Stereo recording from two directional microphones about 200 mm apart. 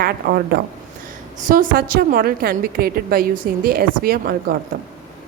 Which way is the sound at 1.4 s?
40° right (ahead or behind).